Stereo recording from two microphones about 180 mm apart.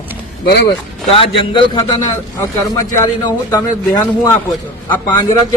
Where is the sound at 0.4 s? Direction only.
65° left (ahead or behind).